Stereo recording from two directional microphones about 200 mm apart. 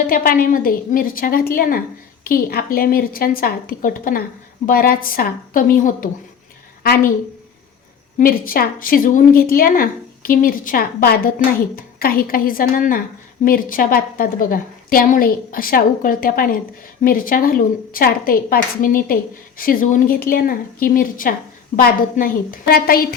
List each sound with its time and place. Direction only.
0.1 s a woman's voice: 45° left (ahead or behind)
8.2 s a woman's voice: 45° left (ahead or behind)